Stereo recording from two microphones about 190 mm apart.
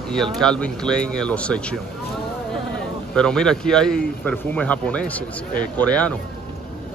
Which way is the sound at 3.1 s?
5° left (ahead or behind).